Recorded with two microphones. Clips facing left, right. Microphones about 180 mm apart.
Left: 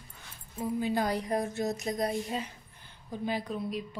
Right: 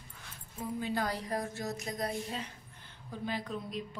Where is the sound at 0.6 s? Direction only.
10° left (ahead or behind).